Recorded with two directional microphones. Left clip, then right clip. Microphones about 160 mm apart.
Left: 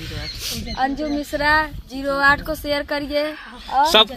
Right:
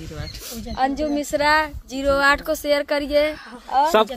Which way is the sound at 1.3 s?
45° right (ahead or behind).